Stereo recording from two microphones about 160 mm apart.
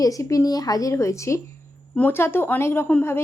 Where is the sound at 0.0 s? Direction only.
20° left (ahead or behind).